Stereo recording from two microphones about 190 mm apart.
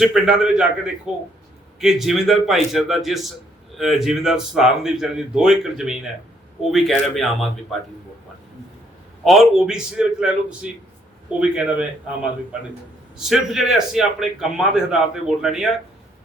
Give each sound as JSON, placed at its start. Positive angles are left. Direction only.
{"t": 0.0, "sound": "a man's voice", "side_deg": -5}
{"t": 9.2, "sound": "a man's voice", "side_deg": 0}